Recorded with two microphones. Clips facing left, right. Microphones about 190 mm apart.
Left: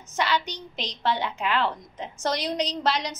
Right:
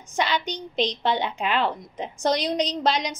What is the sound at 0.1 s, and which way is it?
A woman's voice, 15° right (ahead or behind).